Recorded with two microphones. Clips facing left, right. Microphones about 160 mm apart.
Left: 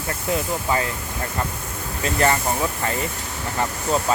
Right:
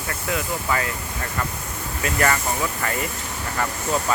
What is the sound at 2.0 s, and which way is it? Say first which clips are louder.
Speech: left 2 dB; 25° left (ahead or behind).